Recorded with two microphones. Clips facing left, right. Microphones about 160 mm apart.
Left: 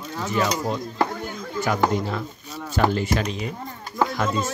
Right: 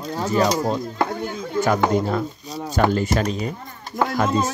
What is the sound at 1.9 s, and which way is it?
Speech, 50° right (ahead or behind).